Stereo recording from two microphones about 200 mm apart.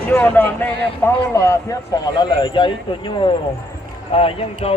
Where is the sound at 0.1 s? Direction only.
10° left (ahead or behind).